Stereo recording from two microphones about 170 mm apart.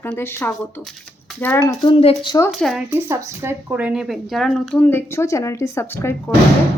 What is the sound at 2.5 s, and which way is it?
Speech, centre (ahead or behind).